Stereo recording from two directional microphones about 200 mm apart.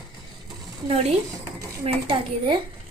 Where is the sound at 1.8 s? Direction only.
30° right (ahead or behind).